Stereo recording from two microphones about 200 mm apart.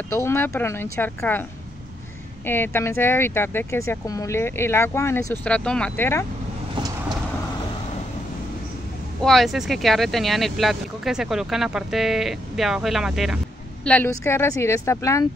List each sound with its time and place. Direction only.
0.1 s speech: 10° left (ahead or behind)
2.4 s speech: 10° left (ahead or behind)
6.7 s vehicle: 20° right (ahead or behind)
9.2 s speech: centre (ahead or behind)
13.8 s speech: 10° left (ahead or behind)